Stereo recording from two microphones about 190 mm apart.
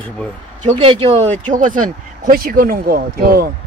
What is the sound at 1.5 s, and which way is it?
Speech, 45° right (ahead or behind).